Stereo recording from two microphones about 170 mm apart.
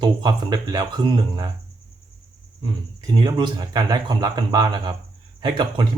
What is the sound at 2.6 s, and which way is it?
Speech, 25° right (ahead or behind).